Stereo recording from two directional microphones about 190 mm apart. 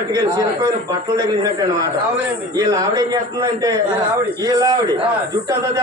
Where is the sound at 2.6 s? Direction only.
20° right (ahead or behind).